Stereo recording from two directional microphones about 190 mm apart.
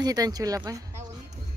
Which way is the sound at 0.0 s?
20° right (ahead or behind).